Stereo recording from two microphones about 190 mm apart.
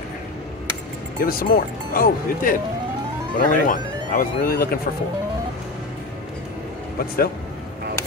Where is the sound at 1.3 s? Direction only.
50° left (ahead or behind).